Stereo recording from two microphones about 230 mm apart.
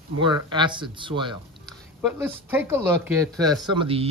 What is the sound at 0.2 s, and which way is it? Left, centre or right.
Speech, right.